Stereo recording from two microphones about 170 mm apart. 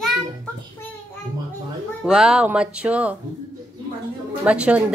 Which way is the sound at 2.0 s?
5° right (ahead or behind).